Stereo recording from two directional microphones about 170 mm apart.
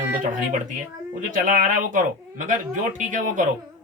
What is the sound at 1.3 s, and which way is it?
Speech, 50° right (ahead or behind).